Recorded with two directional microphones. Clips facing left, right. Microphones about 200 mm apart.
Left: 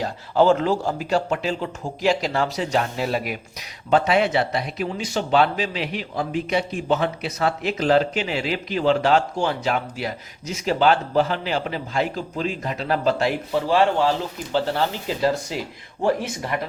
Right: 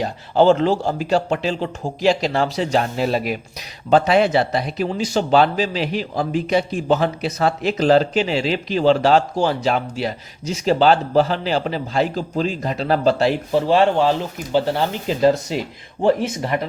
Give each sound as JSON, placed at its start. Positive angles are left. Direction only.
{"t": 0.0, "sound": "speech", "side_deg": -25}